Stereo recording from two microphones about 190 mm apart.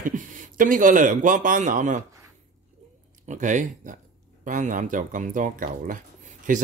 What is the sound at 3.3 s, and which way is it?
Speech, 40° right (ahead or behind).